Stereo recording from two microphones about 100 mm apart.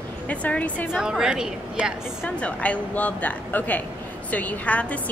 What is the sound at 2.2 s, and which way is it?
A woman's voice, 15° left (ahead or behind).